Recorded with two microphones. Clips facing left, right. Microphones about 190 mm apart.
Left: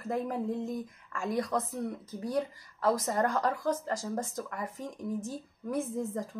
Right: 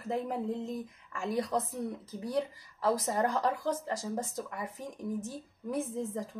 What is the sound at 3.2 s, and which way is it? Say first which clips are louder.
A woman's voice: left 1 dB; 20° right (ahead or behind).